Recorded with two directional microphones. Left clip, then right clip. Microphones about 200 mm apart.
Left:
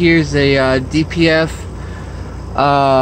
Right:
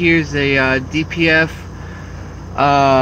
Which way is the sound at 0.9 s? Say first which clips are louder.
Left 3 dB; 60° left (ahead or behind).